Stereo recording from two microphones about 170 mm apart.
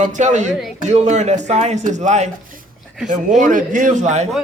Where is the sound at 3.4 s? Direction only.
50° right (ahead or behind).